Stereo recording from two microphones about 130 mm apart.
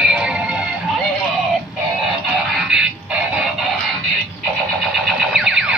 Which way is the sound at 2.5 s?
5° right (ahead or behind).